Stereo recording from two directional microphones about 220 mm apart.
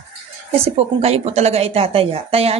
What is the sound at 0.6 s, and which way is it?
Speech, 30° right (ahead or behind).